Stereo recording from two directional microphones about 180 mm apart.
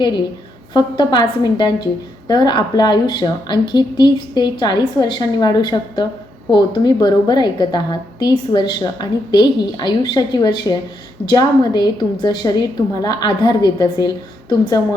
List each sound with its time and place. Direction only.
0.7 s a woman's voice: 25° left (ahead or behind)